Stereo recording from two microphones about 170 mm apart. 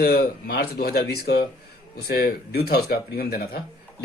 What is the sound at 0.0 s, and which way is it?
A man's voice, 65° left (ahead or behind).